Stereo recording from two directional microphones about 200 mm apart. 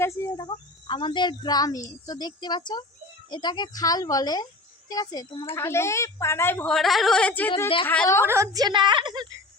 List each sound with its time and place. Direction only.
0.0 s a woman's voice: 15° left (ahead or behind)
8.3 s a woman's voice: 15° right (ahead or behind)